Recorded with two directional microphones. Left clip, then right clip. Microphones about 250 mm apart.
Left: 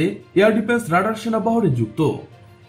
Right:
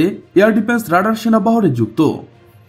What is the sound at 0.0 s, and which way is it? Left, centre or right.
Speech, right.